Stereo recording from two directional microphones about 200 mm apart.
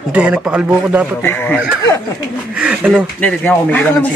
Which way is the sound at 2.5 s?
5° right (ahead or behind).